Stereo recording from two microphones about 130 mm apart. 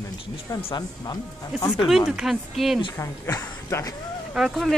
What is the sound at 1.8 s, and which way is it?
Speech, 5° right (ahead or behind).